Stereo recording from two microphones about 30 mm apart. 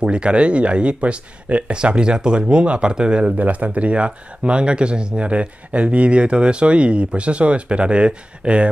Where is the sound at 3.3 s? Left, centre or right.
Right.